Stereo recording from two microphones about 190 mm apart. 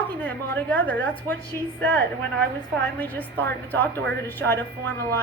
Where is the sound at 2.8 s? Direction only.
10° left (ahead or behind).